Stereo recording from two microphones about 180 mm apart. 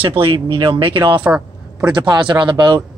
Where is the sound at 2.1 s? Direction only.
25° right (ahead or behind).